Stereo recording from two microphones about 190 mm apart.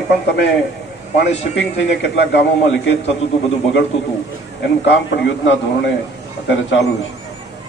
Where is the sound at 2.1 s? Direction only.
70° left (ahead or behind).